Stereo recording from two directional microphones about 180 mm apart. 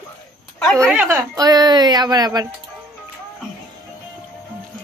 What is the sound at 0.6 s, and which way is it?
Speech, centre (ahead or behind).